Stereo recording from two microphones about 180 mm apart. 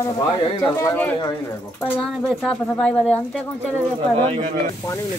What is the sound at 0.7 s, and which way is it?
Speech, 15° left (ahead or behind).